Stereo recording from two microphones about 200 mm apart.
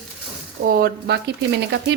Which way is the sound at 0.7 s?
50° right (ahead or behind).